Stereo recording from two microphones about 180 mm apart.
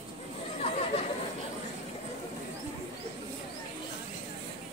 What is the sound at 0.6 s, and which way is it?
Chatter, 35° left (ahead or behind).